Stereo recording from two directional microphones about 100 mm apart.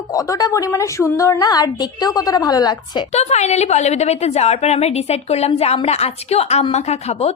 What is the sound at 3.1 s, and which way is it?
A woman's voice, 90° left.